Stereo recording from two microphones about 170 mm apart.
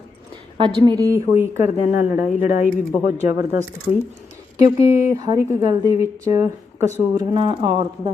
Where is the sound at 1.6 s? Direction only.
40° left (ahead or behind).